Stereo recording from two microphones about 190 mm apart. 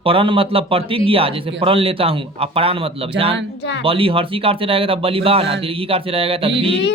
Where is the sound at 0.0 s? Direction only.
30° right (ahead or behind).